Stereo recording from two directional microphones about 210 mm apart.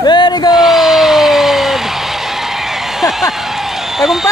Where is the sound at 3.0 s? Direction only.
Centre (ahead or behind).